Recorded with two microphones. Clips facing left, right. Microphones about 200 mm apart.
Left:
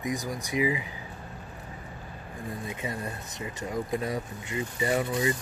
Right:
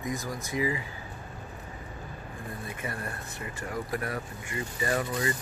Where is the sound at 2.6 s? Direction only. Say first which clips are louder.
Left 2 dB; 20° left (ahead or behind).